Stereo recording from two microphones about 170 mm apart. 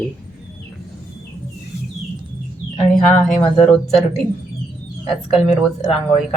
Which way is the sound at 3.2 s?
Centre (ahead or behind).